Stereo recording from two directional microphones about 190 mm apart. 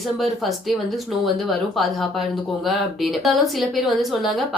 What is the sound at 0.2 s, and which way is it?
Speech, centre (ahead or behind).